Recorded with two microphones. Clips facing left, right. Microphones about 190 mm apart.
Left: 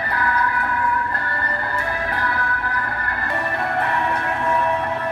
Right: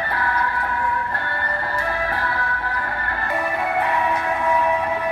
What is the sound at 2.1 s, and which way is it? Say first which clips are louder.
Music: left 1 dB; 30° right (ahead or behind).